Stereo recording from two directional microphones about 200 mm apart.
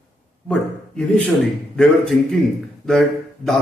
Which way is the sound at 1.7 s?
5° left (ahead or behind).